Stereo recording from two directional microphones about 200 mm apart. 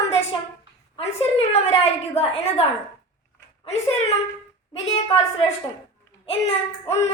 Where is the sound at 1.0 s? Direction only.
30° left (ahead or behind).